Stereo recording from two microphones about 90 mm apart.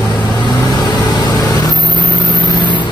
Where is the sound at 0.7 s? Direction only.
50° left (ahead or behind).